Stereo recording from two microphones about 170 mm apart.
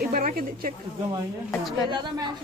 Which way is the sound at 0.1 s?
60° right (ahead or behind).